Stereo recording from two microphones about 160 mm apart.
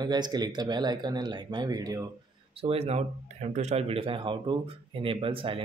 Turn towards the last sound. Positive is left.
turn(degrees=-35)  # may be behind; listen again after turning